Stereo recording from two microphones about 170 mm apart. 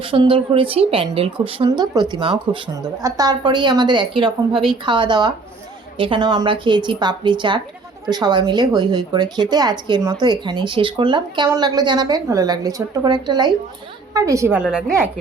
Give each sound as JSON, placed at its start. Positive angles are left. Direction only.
{"t": 0.0, "sound": "a woman's voice", "side_deg": -30}